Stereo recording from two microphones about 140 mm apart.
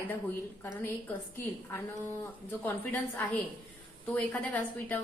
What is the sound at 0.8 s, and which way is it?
A woman's voice, 15° left (ahead or behind).